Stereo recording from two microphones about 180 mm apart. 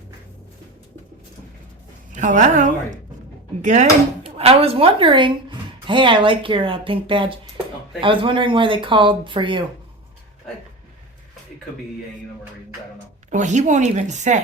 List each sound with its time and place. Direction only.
2.1 s a woman's voice: 45° right (ahead or behind)
4.2 s a woman's voice: 35° right (ahead or behind)
13.3 s speech: 40° right (ahead or behind)